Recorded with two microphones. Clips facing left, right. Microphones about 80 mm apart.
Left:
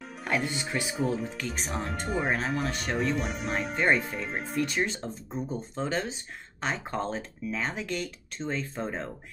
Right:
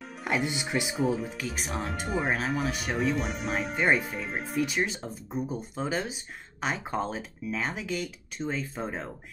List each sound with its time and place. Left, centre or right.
0.2 s speech: centre
0.9 s speech: centre